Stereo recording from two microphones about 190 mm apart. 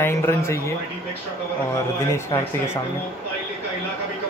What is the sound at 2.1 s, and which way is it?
Speech, 15° left (ahead or behind).